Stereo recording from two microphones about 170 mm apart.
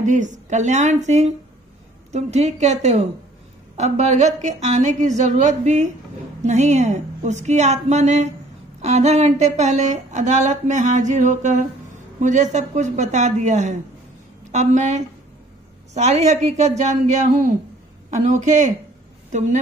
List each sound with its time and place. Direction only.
0.0 s a woman's voice: 45° right (ahead or behind)